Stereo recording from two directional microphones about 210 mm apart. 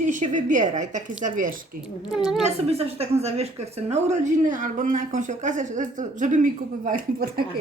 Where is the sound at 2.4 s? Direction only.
30° right (ahead or behind).